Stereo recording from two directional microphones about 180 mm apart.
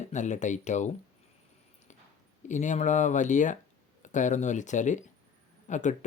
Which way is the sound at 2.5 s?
40° left (ahead or behind).